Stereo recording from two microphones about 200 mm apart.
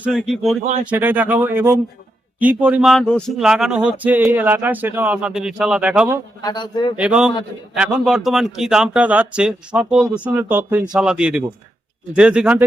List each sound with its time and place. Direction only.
0.0 s speech: centre (ahead or behind)
0.6 s speech: 35° right (ahead or behind)
0.9 s speech: 10° right (ahead or behind)
6.4 s speech: 20° left (ahead or behind)
6.9 s speech: 5° right (ahead or behind)